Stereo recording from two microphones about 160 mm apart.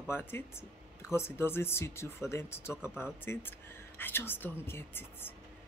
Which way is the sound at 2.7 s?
5° right (ahead or behind).